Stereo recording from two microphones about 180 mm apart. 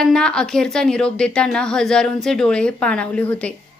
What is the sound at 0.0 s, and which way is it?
A woman's voice, 5° left (ahead or behind).